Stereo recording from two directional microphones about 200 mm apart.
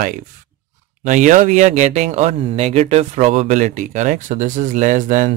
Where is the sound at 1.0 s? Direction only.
40° right (ahead or behind).